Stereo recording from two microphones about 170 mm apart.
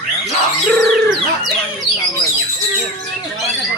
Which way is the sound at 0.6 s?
Centre (ahead or behind).